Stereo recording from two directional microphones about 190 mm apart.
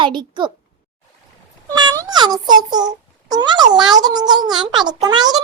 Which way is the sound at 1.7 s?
20° right (ahead or behind).